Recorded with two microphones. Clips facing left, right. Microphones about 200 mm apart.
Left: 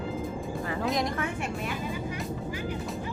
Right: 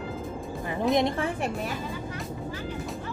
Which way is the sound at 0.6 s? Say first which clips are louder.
Right 3 dB; 20° right (ahead or behind).